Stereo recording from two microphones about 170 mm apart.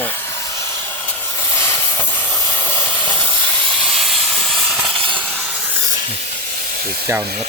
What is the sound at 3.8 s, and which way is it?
Steam, centre (ahead or behind).